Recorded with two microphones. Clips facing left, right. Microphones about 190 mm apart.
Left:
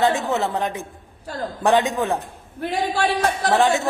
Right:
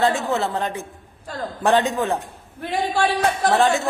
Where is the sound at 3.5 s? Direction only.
15° left (ahead or behind).